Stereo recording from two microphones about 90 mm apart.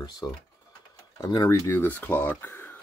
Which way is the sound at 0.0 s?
50° left (ahead or behind).